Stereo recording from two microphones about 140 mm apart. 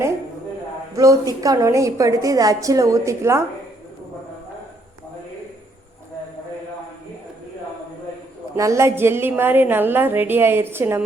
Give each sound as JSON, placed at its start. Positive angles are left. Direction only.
{"t": 0.9, "sound": "a woman's voice", "side_deg": -25}
{"t": 8.5, "sound": "a woman's voice", "side_deg": -20}